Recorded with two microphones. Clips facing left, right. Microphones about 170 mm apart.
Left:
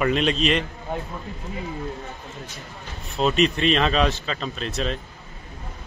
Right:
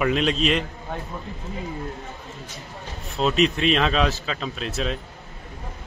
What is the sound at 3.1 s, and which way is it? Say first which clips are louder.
Speech: even; centre (ahead or behind).